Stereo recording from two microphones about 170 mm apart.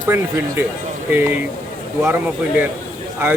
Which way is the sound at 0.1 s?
15° right (ahead or behind).